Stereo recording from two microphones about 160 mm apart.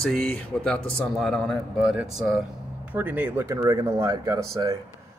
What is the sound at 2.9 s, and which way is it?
Speech, 10° right (ahead or behind).